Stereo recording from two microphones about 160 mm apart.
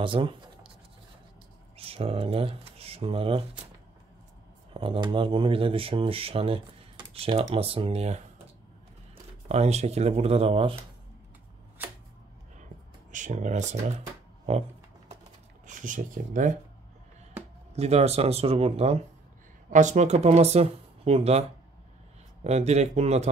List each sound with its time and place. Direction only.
0.0 s speech: 30° right (ahead or behind)
1.8 s speech: 35° right (ahead or behind)
4.7 s speech: 30° right (ahead or behind)
9.5 s speech: 45° right (ahead or behind)
11.8 s a sound: 10° right (ahead or behind)
13.1 s speech: 50° right (ahead or behind)
15.6 s speech: 55° right (ahead or behind)
17.7 s speech: 40° right (ahead or behind)